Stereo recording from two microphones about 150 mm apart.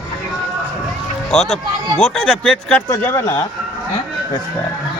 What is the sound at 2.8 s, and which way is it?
Speech, 20° left (ahead or behind).